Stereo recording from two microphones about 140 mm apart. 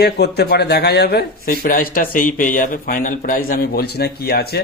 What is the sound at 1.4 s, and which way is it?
A man's voice, 90° left.